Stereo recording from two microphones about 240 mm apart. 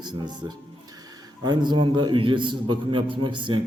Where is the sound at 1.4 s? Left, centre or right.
Centre.